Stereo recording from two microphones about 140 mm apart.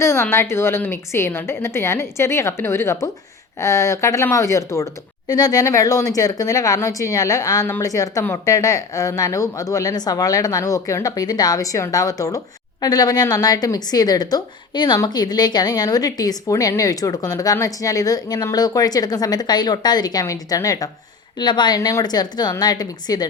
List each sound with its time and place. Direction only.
0.0 s a woman's voice: 20° left (ahead or behind)